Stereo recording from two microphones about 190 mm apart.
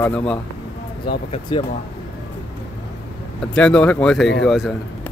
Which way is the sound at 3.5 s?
5° left (ahead or behind).